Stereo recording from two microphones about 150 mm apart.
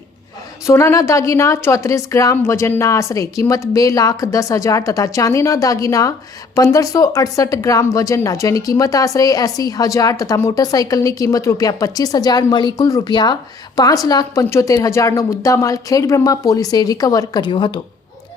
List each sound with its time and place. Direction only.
0.7 s a woman's voice: 20° left (ahead or behind)